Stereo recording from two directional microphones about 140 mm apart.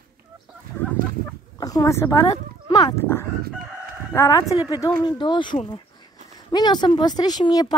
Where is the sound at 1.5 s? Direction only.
25° left (ahead or behind).